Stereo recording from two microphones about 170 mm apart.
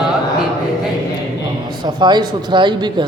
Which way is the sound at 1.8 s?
25° right (ahead or behind).